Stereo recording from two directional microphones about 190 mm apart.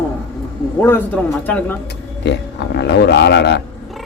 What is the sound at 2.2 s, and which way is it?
Speech, 65° left (ahead or behind).